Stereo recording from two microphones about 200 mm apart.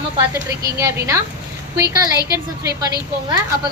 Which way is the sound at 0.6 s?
15° right (ahead or behind).